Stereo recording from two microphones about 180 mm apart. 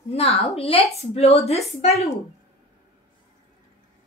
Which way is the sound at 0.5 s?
35° left (ahead or behind).